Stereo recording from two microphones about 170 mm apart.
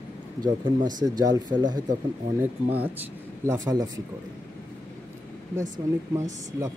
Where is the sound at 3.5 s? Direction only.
20° right (ahead or behind).